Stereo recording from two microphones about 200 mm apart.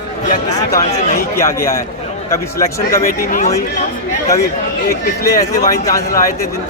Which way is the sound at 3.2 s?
40° left (ahead or behind).